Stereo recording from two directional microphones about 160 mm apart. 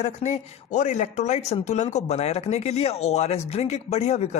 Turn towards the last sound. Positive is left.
turn(degrees=40)  # may be behind; listen again after turning